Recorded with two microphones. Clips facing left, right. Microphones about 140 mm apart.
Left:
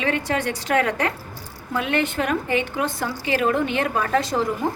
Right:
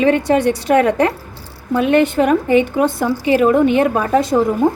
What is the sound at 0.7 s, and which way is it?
A woman's voice, 15° right (ahead or behind).